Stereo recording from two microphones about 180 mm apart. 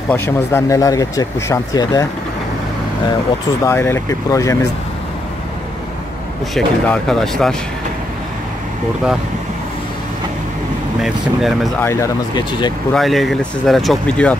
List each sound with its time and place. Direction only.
0.1 s speech: 15° left (ahead or behind)
3.6 s speech: 15° left (ahead or behind)
6.5 s speech: 5° left (ahead or behind)
11.0 s speech: centre (ahead or behind)
11.8 s speech: 15° left (ahead or behind)
12.9 s speech: centre (ahead or behind)